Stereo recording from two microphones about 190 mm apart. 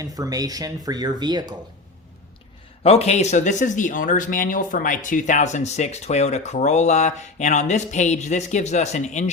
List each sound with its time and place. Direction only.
0.0 s speech: 20° right (ahead or behind)
2.8 s speech: 35° left (ahead or behind)